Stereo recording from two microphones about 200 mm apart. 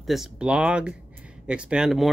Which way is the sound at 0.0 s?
Centre (ahead or behind).